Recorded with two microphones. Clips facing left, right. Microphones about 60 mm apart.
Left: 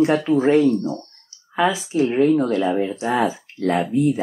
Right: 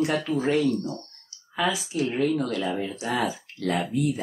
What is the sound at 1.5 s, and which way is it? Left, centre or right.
Speech, left.